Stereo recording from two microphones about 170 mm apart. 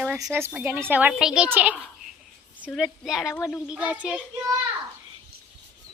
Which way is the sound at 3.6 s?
5° right (ahead or behind).